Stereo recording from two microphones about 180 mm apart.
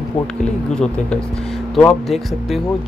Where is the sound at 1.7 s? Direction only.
Centre (ahead or behind).